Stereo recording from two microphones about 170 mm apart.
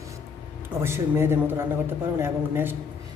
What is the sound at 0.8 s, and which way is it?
A man's voice, 15° right (ahead or behind).